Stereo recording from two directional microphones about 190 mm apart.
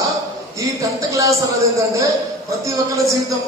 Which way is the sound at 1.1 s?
15° right (ahead or behind).